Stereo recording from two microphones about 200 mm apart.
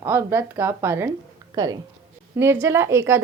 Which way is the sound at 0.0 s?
10° right (ahead or behind).